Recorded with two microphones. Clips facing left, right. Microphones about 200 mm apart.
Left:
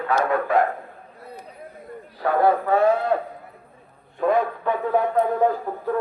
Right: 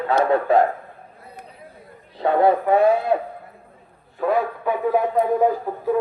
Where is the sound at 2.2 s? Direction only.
20° right (ahead or behind).